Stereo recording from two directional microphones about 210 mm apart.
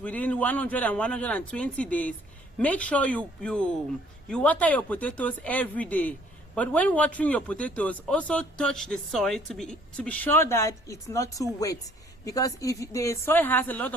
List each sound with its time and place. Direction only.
0.0 s speech: 5° left (ahead or behind)